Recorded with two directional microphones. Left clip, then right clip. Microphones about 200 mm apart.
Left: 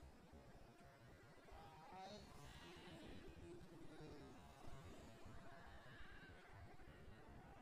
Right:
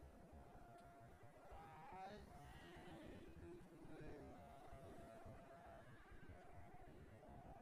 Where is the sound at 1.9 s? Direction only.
15° left (ahead or behind).